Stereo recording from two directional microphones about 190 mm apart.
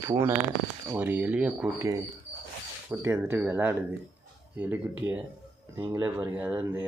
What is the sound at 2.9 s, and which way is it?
Speech, 10° right (ahead or behind).